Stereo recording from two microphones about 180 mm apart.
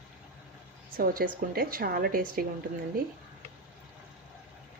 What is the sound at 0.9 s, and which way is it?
Speech, 55° right (ahead or behind).